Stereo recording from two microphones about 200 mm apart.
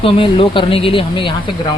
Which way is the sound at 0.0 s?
25° left (ahead or behind).